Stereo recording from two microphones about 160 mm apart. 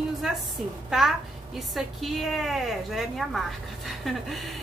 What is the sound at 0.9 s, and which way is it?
A woman's voice, centre (ahead or behind).